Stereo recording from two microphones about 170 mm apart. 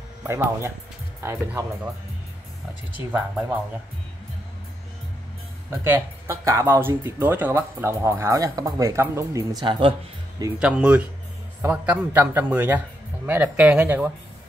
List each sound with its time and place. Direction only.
0.2 s speech: 15° right (ahead or behind)
3.1 s speech: 5° right (ahead or behind)
5.9 s speech: 15° right (ahead or behind); by 9.9 s 30° right (ahead or behind)
10.6 s speech: 5° right (ahead or behind)